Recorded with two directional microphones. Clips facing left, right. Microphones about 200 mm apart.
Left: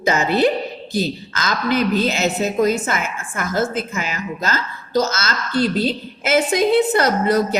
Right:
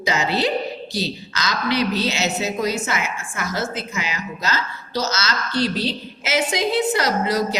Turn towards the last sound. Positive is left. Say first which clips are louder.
# left 4 dB
turn(degrees=55)  # may be behind; listen again after turning